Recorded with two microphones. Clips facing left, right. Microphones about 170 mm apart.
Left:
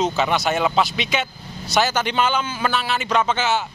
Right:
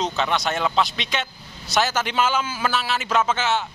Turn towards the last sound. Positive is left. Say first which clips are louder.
# left 1 dB
turn(degrees=0)  # may be behind; listen again after turning